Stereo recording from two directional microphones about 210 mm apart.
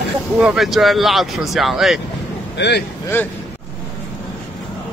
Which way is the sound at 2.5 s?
55° left (ahead or behind).